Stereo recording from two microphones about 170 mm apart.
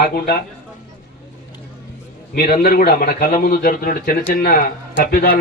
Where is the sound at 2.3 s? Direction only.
60° left (ahead or behind).